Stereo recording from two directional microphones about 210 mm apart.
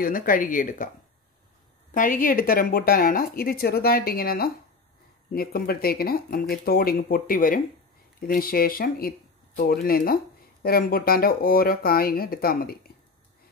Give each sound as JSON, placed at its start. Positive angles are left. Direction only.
{"t": 0.0, "sound": "speech", "side_deg": 40}
{"t": 2.0, "sound": "speech", "side_deg": 40}